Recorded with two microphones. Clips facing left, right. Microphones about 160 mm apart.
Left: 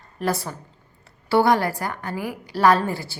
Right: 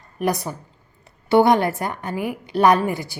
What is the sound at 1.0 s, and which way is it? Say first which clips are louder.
A woman's voice: right 3 dB; 20° right (ahead or behind).